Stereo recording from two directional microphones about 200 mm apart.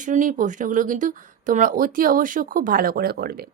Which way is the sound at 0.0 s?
40° right (ahead or behind).